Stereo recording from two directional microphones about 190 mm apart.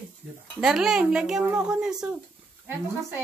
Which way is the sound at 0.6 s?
5° right (ahead or behind).